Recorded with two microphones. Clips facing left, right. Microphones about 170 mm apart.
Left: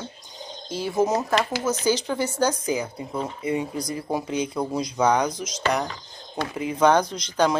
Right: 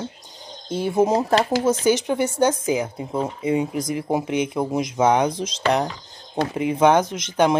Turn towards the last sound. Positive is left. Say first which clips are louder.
# right 3 dB
turn(degrees=-25)  # may be behind; listen again after turning